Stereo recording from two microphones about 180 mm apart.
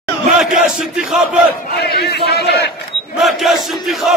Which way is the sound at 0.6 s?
Centre (ahead or behind).